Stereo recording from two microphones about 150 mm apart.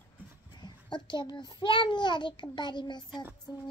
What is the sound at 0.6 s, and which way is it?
A child's voice, 30° left (ahead or behind).